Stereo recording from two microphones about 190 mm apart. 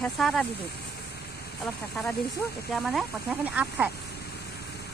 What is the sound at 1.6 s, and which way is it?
Speech, centre (ahead or behind).